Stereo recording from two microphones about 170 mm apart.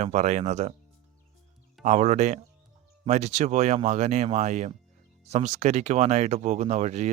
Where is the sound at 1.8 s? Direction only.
40° right (ahead or behind).